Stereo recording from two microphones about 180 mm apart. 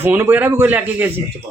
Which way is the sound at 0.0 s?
10° right (ahead or behind).